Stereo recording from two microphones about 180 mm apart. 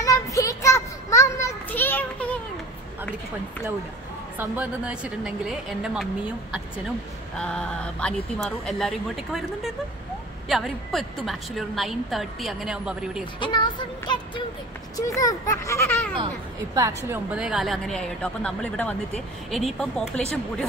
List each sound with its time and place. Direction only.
0.0 s children playing: 20° left (ahead or behind)
4.4 s a woman's voice: 10° right (ahead or behind)
7.3 s a woman's voice: 5° left (ahead or behind)
13.4 s music: 25° left (ahead or behind)
15.0 s a child's voice: 20° left (ahead or behind)
16.7 s speech: 20° right (ahead or behind)
17.3 s a woman's voice: 5° right (ahead or behind)